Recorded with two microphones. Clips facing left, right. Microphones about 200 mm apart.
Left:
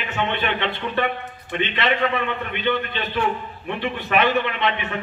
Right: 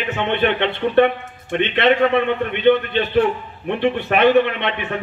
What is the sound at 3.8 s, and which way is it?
Speech, 60° right (ahead or behind).